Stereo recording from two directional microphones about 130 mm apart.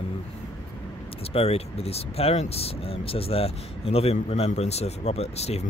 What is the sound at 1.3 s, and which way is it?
Speech, 50° left (ahead or behind).